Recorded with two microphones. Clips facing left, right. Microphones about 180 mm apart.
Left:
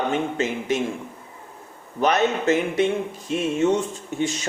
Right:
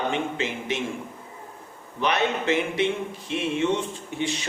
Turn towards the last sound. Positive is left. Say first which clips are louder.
# left 3 dB
turn(degrees=45)  # may be behind; listen again after turning